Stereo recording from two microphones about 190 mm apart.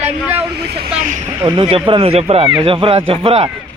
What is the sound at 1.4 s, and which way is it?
A man's voice, 25° right (ahead or behind).